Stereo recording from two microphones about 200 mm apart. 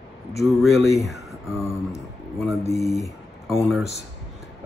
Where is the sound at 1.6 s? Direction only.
15° left (ahead or behind).